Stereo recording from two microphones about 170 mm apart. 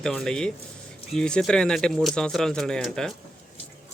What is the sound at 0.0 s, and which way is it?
Speech, 5° left (ahead or behind).